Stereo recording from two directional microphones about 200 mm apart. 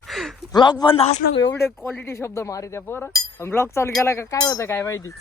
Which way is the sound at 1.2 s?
65° left (ahead or behind).